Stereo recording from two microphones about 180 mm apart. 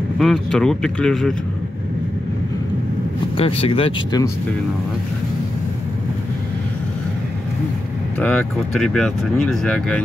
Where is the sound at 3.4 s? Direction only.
30° left (ahead or behind).